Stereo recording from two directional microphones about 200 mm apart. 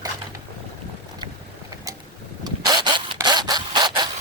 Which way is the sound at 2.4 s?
20° right (ahead or behind).